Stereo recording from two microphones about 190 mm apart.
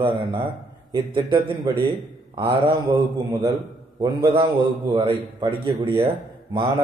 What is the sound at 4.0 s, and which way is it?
A man's voice, 20° right (ahead or behind).